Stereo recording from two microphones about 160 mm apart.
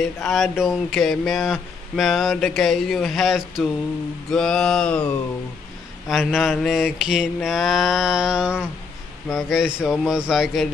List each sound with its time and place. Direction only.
0.2 s speech: centre (ahead or behind)